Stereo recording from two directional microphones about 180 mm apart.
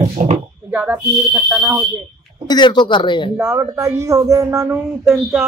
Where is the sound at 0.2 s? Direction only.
45° right (ahead or behind).